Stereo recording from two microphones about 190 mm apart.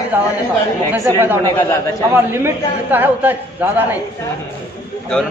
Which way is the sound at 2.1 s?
10° right (ahead or behind).